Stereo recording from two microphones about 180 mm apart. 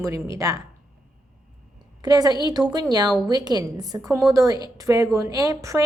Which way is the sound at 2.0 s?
20° right (ahead or behind).